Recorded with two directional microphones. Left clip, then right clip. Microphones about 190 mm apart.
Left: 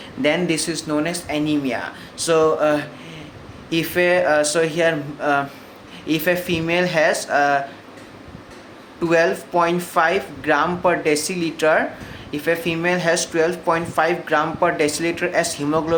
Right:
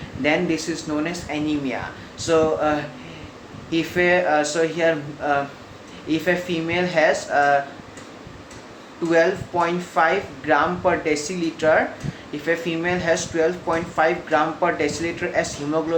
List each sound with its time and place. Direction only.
0.2 s speech: 45° left (ahead or behind)
9.0 s speech: 50° left (ahead or behind)